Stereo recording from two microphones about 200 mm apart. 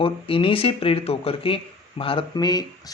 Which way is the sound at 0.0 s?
25° left (ahead or behind).